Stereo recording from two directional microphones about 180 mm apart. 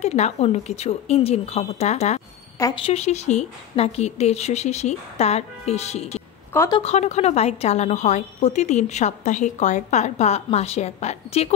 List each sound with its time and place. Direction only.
0.0 s a woman's voice: 40° left (ahead or behind)